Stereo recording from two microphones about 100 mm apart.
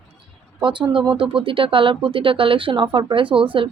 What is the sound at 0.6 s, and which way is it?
Speech, 55° right (ahead or behind).